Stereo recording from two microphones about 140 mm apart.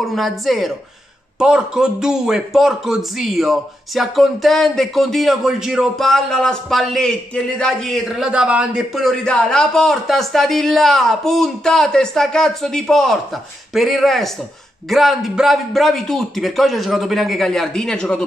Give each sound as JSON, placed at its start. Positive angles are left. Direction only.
{"t": 0.0, "sound": "a man's voice", "side_deg": 0}